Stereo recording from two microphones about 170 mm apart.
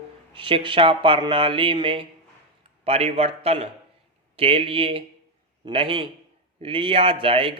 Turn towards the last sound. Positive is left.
turn(degrees=-30)  # may be behind; listen again after turning